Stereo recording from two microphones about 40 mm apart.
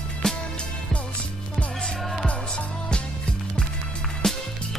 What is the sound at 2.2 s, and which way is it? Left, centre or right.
Music, left.